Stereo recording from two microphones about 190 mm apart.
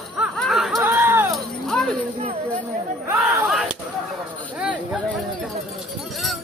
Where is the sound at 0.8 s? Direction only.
15° right (ahead or behind).